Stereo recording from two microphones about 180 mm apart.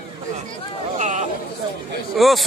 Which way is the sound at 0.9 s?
40° right (ahead or behind).